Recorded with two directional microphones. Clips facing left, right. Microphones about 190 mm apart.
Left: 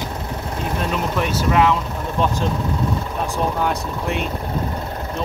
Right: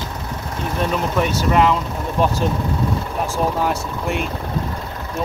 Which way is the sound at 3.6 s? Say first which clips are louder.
Right 1 dB; centre (ahead or behind).